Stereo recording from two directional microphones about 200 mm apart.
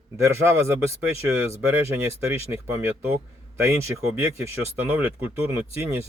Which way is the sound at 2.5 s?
10° right (ahead or behind).